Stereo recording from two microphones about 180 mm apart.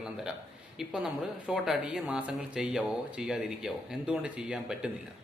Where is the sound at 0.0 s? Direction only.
5° right (ahead or behind).